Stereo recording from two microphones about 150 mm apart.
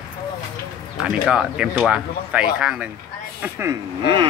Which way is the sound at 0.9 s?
5° right (ahead or behind).